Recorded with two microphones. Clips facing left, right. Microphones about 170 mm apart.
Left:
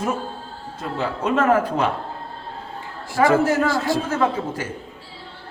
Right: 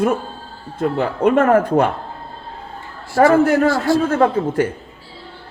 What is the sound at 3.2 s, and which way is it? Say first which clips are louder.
A man's voice: right 5 dB; 50° right (ahead or behind).